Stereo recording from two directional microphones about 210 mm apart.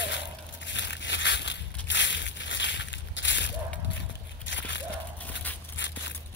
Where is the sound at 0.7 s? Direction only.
60° left (ahead or behind).